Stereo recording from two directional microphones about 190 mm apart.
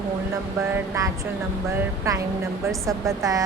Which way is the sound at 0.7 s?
15° right (ahead or behind).